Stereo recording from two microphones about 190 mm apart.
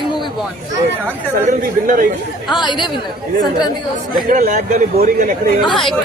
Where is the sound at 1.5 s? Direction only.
45° right (ahead or behind).